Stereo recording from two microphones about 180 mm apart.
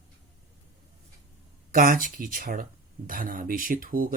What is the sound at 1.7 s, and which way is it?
Speech, 50° right (ahead or behind).